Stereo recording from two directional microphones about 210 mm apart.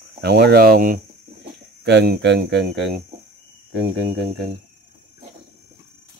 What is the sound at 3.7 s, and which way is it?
Speech, 55° right (ahead or behind).